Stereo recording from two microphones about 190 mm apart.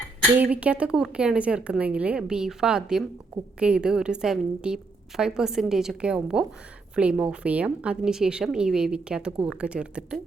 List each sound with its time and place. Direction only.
0.5 s a woman's voice: 5° right (ahead or behind)